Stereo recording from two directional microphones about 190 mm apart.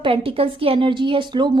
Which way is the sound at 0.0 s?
30° right (ahead or behind).